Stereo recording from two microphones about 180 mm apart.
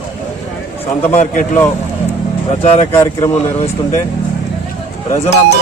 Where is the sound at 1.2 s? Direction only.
45° left (ahead or behind).